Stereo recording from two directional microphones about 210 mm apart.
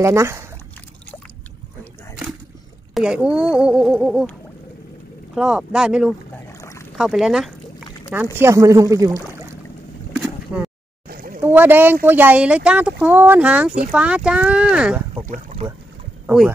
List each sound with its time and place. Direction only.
0.0 s speech: 15° right (ahead or behind)
2.9 s speech: 5° right (ahead or behind)
10.2 s boat: 5° right (ahead or behind)
11.1 s a sound: 45° right (ahead or behind)
11.4 s speech: 10° right (ahead or behind)
15.2 s speech: 35° right (ahead or behind)
16.3 s speech: 10° right (ahead or behind)